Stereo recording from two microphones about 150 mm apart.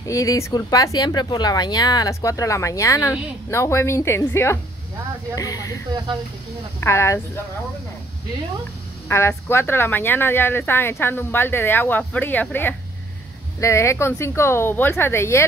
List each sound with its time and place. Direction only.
0.0 s speech: 20° left (ahead or behind)
6.8 s speech: 20° left (ahead or behind)
9.1 s speech: 15° left (ahead or behind)